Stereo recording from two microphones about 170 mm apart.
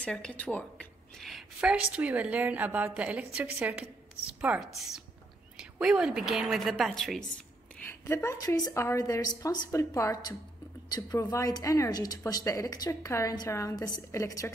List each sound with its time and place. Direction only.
0.0 s a woman's voice: 5° left (ahead or behind)
7.8 s speech: 15° left (ahead or behind)